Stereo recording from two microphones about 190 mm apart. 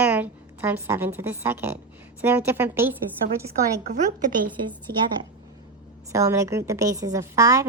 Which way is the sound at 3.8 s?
40° right (ahead or behind).